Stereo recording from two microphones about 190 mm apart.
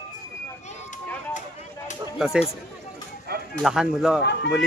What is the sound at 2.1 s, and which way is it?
Speech, centre (ahead or behind).